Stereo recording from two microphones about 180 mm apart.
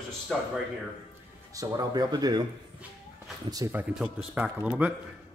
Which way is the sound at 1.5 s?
20° right (ahead or behind).